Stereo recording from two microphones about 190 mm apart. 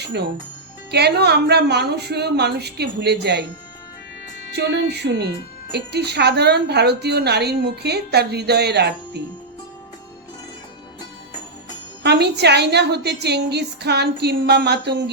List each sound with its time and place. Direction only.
0.0 s a woman's voice: 60° right (ahead or behind)
4.5 s a woman's voice: 60° right (ahead or behind)
12.0 s a woman's voice: 60° right (ahead or behind)